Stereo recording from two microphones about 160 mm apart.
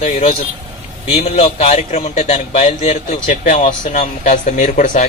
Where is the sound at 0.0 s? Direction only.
40° left (ahead or behind).